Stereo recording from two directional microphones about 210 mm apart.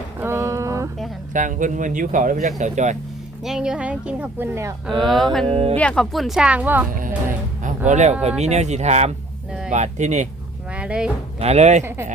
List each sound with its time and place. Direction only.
0.2 s a sound: 10° right (ahead or behind)
1.3 s speech: 35° right (ahead or behind)
3.4 s a woman's voice: 5° right (ahead or behind)
4.9 s a woman's voice: centre (ahead or behind)
5.5 s speech: 30° right (ahead or behind)
5.7 s a woman's voice: 5° left (ahead or behind)
7.9 s speech: 35° right (ahead or behind)
9.5 s a sound: 5° right (ahead or behind)
9.7 s speech: 35° right (ahead or behind)
10.7 s a sound: 5° right (ahead or behind)
11.3 s speech: 30° right (ahead or behind)